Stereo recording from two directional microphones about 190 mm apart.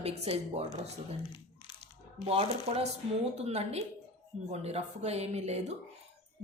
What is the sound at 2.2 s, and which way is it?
A woman's voice, 30° right (ahead or behind).